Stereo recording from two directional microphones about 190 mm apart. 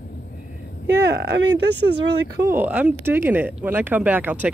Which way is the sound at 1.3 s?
65° right (ahead or behind).